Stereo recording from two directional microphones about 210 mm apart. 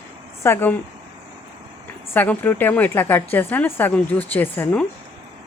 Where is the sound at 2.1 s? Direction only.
10° left (ahead or behind).